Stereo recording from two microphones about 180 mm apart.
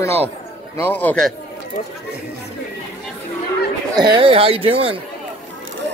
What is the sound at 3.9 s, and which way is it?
Speech, 25° right (ahead or behind).